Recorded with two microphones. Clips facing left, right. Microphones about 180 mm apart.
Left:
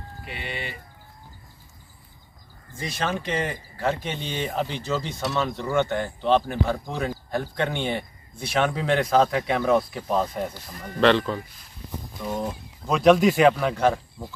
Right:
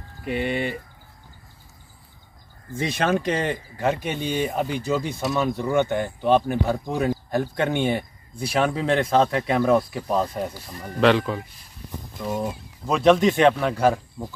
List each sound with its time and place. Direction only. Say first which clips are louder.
0.3 s speech: right 10 dB; 50° right (ahead or behind)
3.0 s speech: right 4 dB; 45° right (ahead or behind)
3.7 s speech: right 1 dB; 15° right (ahead or behind)